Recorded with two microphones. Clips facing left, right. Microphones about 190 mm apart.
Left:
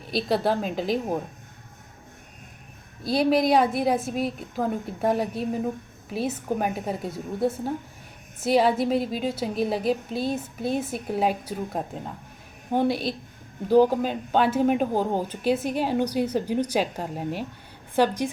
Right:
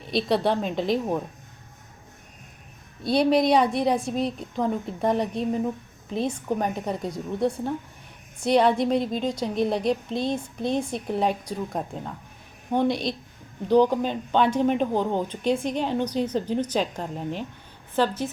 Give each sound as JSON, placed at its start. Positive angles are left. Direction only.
{"t": 0.1, "sound": "a woman's voice", "side_deg": 0}
{"t": 3.0, "sound": "a woman's voice", "side_deg": 0}